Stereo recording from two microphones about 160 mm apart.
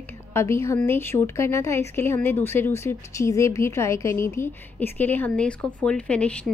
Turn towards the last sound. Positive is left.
turn(degrees=5)  # may be behind; listen again after turning